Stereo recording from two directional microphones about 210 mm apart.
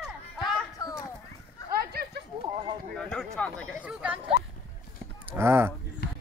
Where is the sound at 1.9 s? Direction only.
50° right (ahead or behind).